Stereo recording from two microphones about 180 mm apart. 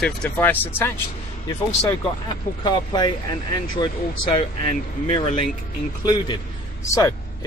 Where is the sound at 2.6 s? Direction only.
25° left (ahead or behind).